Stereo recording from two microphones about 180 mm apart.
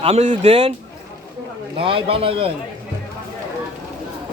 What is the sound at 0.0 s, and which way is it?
Speech, 35° right (ahead or behind).